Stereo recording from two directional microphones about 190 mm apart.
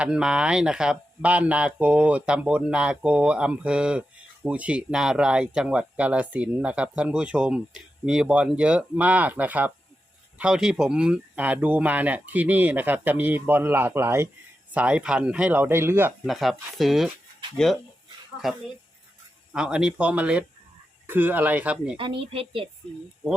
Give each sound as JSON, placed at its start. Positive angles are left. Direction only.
{"t": 0.0, "sound": "speech", "side_deg": -5}
{"t": 16.2, "sound": "speech", "side_deg": 0}
{"t": 18.4, "sound": "speech", "side_deg": 0}
{"t": 21.9, "sound": "a woman's voice", "side_deg": -30}